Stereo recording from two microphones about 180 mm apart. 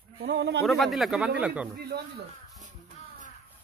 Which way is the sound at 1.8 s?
60° right (ahead or behind).